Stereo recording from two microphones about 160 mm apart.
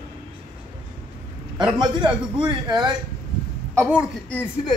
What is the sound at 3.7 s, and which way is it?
Speech, 15° right (ahead or behind).